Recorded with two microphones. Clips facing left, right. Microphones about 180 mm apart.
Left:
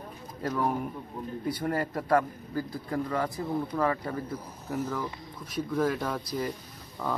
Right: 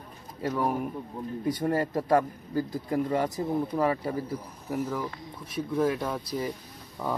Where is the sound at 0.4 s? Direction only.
5° right (ahead or behind).